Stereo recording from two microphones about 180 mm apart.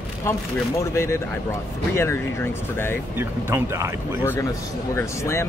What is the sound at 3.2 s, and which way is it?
Speech, 15° right (ahead or behind).